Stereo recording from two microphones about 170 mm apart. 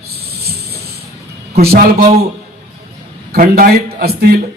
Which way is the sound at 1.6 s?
65° right (ahead or behind).